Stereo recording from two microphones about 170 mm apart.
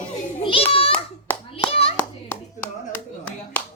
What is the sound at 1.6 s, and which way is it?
Hands, 35° left (ahead or behind).